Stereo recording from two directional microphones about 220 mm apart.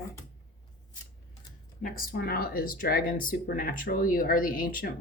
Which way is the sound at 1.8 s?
40° left (ahead or behind).